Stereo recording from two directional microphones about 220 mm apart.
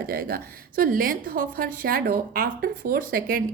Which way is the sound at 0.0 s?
40° right (ahead or behind).